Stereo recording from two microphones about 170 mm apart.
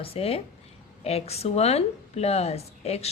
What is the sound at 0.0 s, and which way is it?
Speech, 35° left (ahead or behind).